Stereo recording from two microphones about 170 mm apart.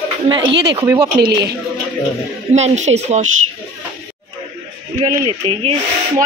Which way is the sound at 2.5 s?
40° right (ahead or behind).